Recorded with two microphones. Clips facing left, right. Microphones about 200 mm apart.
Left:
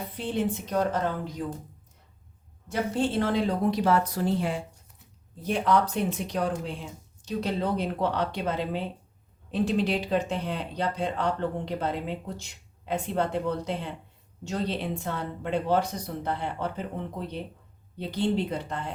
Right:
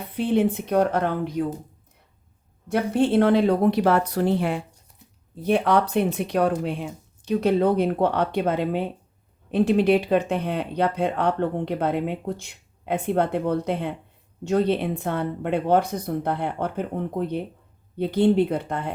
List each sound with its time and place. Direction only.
0.1 s speech: 60° right (ahead or behind)
2.6 s speech: 60° right (ahead or behind)